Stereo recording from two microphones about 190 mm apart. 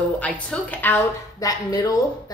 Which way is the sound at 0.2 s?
5° left (ahead or behind).